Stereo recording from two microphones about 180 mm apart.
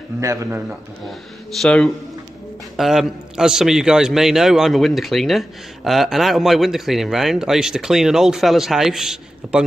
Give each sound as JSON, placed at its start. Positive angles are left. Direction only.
{"t": 0.2, "sound": "a man's voice", "side_deg": -15}
{"t": 1.6, "sound": "a man's voice", "side_deg": 5}